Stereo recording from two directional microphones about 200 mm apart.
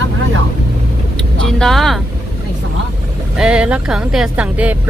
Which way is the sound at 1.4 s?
Centre (ahead or behind).